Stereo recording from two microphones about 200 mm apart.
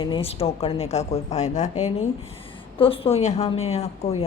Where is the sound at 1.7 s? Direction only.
90° left.